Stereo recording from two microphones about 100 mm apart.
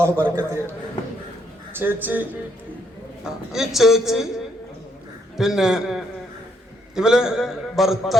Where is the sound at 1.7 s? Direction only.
20° right (ahead or behind).